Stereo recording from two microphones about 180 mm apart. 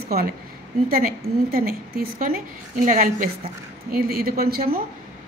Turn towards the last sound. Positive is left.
turn(degrees=-60)  # may be behind; listen again after turning